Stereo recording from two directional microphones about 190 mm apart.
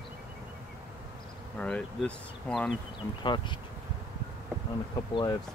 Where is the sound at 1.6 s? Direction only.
5° left (ahead or behind).